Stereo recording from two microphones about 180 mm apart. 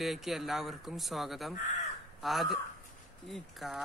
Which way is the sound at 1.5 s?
45° left (ahead or behind).